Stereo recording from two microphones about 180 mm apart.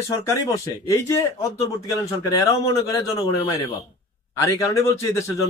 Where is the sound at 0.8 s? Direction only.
15° left (ahead or behind).